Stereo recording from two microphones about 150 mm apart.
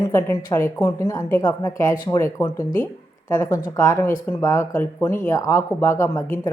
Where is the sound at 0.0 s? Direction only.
20° left (ahead or behind).